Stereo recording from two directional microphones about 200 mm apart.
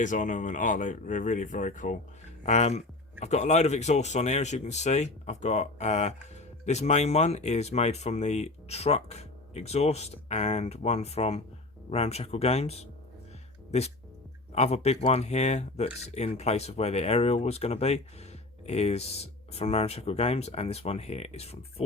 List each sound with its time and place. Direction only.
0.0 s speech: 40° left (ahead or behind)